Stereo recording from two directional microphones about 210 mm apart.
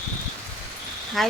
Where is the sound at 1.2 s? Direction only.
Centre (ahead or behind).